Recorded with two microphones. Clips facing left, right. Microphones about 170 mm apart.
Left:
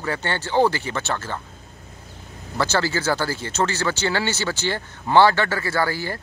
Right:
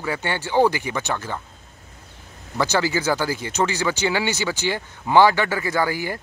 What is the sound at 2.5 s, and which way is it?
Speech, 15° right (ahead or behind).